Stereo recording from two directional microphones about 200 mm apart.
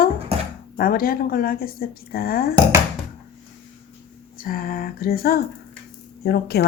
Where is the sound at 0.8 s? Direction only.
45° left (ahead or behind).